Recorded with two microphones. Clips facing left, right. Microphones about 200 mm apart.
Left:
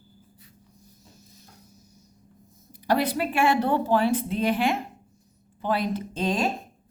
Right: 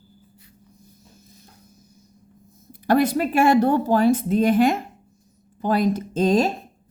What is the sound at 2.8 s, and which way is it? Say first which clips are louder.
Speech: right 5 dB; 50° right (ahead or behind).